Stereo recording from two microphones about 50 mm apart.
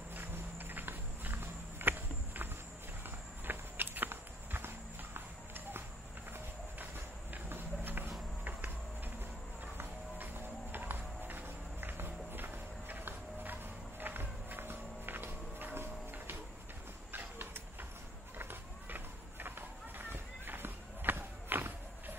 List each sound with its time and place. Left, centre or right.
0.1 s walk: right
3.4 s clip-clop: right
7.4 s a sound: right
9.8 s music: right
17.1 s a sound: right
20.1 s walk: right